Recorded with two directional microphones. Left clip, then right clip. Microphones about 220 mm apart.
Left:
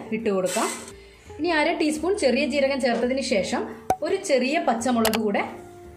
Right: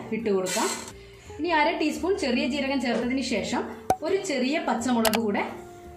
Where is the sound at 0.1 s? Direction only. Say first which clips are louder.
Left 3 dB; 40° left (ahead or behind).